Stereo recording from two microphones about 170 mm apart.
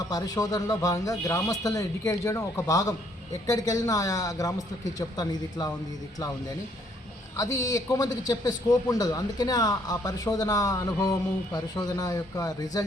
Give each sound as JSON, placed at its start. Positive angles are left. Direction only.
{"t": 0.1, "sound": "a man's voice", "side_deg": 20}
{"t": 7.3, "sound": "a man's voice", "side_deg": 20}